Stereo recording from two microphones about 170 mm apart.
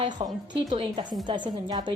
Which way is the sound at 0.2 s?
30° right (ahead or behind).